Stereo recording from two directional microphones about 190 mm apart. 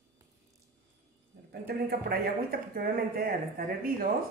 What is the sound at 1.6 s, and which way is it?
Speech, 55° right (ahead or behind).